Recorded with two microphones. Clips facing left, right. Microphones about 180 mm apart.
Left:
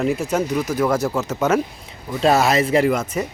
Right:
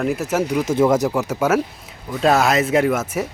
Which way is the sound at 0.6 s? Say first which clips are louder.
Right 3 dB; 25° right (ahead or behind).